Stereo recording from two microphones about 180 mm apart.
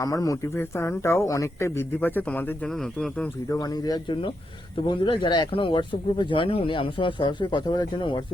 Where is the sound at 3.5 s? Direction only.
20° left (ahead or behind).